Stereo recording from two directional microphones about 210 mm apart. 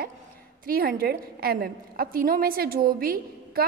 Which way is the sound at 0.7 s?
45° right (ahead or behind).